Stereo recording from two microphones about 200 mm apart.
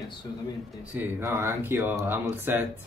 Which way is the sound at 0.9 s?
10° right (ahead or behind).